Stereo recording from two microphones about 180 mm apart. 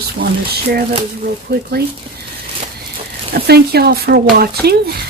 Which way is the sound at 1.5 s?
60° right (ahead or behind).